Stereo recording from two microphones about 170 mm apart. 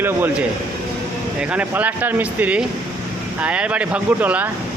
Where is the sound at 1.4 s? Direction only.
10° right (ahead or behind).